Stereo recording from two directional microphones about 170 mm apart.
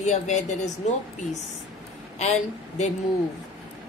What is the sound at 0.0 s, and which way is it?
Speech, 45° left (ahead or behind).